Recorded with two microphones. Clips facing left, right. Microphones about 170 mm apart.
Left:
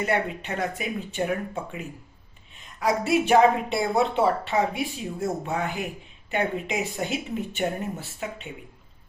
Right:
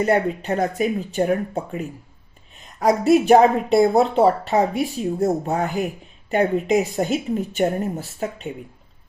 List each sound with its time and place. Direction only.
0.0 s a woman's voice: 40° right (ahead or behind)